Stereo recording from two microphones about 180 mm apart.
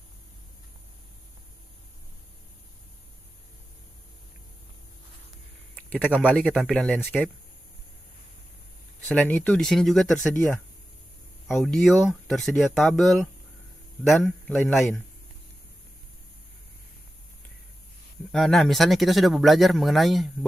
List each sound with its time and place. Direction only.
6.1 s speech: 5° left (ahead or behind)
9.0 s speech: 10° left (ahead or behind)
10.3 s speech: 15° left (ahead or behind)
11.4 s speech: centre (ahead or behind)
18.3 s speech: centre (ahead or behind)